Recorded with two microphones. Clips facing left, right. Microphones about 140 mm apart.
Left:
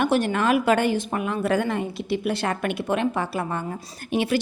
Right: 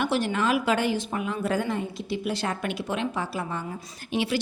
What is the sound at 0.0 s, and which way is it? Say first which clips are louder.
A woman's voice: left 4 dB; 50° left (ahead or behind).